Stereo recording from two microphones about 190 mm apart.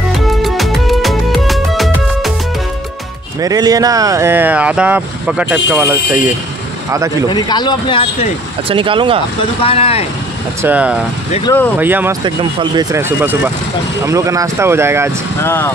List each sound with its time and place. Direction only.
0.4 s music: centre (ahead or behind)
3.3 s speech: 20° right (ahead or behind)
7.2 s speech: 20° left (ahead or behind)
8.6 s speech: 25° right (ahead or behind)
9.6 s speech: 30° left (ahead or behind)
10.6 s speech: 5° right (ahead or behind)
11.5 s speech: 20° left (ahead or behind)
11.8 s speech: 10° right (ahead or behind)
12.4 s speech: 25° right (ahead or behind)
12.9 s speech: 10° right (ahead or behind)
15.4 s speech: 10° left (ahead or behind)